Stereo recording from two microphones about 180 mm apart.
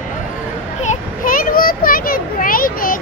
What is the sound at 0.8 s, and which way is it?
Children playing, 45° left (ahead or behind).